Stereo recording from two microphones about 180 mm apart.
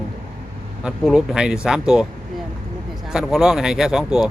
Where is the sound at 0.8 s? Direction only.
5° right (ahead or behind).